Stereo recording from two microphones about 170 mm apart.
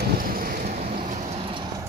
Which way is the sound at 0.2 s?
55° right (ahead or behind).